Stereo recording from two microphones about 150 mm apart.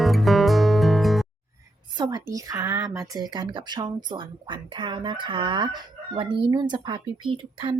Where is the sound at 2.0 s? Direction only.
25° right (ahead or behind).